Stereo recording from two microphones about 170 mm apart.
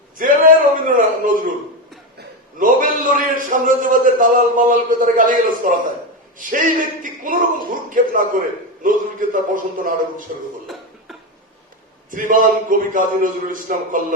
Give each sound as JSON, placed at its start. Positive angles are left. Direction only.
{"t": 0.2, "sound": "a man's voice", "side_deg": -50}
{"t": 12.1, "sound": "a man's voice", "side_deg": -50}